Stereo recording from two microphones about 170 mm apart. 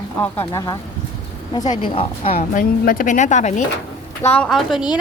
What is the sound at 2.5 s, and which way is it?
Speech, 55° left (ahead or behind).